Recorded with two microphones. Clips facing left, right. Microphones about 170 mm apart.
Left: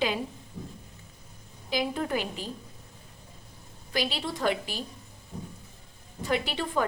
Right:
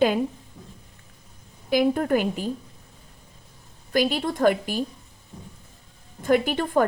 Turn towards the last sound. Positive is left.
turn(degrees=-50)  # may be behind; listen again after turning